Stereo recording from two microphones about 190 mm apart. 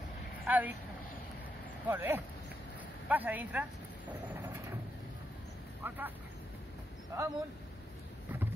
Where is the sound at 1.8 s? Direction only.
10° right (ahead or behind).